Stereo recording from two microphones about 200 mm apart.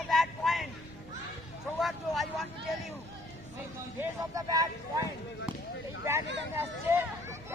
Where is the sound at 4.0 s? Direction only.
15° right (ahead or behind).